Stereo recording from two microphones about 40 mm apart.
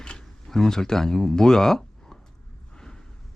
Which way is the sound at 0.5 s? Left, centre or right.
Centre.